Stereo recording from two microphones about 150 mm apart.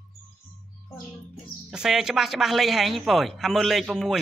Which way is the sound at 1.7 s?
5° right (ahead or behind).